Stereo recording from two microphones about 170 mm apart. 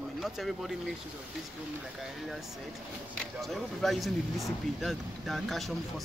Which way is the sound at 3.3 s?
Centre (ahead or behind).